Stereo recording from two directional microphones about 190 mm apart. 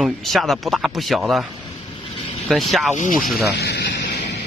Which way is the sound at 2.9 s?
40° left (ahead or behind).